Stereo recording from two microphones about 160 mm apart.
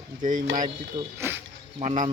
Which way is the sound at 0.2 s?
55° right (ahead or behind).